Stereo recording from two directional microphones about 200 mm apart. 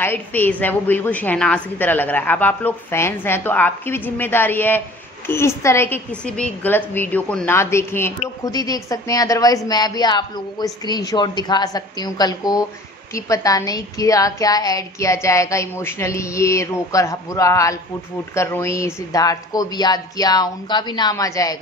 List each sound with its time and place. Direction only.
0.0 s a woman's voice: 10° left (ahead or behind)